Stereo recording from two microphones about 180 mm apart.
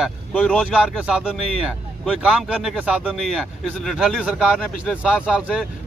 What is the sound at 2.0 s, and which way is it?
Speech, centre (ahead or behind).